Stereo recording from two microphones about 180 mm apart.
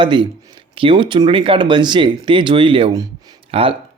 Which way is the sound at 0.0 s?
25° right (ahead or behind).